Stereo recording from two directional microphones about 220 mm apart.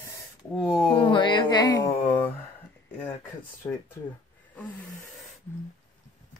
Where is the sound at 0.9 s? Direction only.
25° left (ahead or behind).